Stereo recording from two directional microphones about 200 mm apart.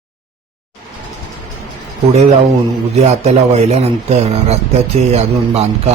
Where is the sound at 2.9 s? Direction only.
35° right (ahead or behind).